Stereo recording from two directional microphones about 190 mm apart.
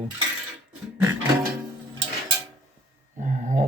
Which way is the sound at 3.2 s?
40° right (ahead or behind).